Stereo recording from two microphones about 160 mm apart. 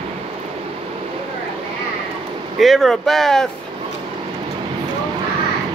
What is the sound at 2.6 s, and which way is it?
Speech, centre (ahead or behind).